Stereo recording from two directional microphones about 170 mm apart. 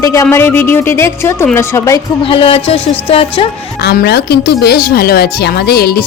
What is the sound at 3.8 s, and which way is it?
Speech, 70° left (ahead or behind).